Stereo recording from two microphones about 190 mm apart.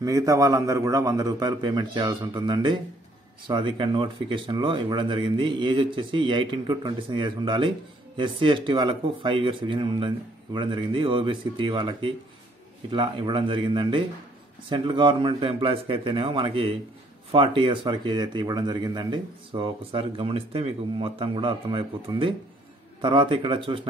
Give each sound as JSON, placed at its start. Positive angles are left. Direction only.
{"t": 0.0, "sound": "speech", "side_deg": -15}